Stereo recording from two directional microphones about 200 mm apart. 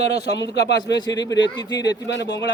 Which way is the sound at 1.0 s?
20° left (ahead or behind).